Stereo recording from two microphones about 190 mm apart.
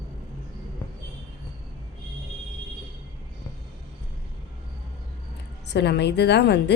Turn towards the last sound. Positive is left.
turn(degrees=60)  # may be behind; listen again after turning